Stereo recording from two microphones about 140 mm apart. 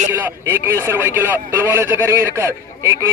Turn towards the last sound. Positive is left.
turn(degrees=-20)  # may be behind; listen again after turning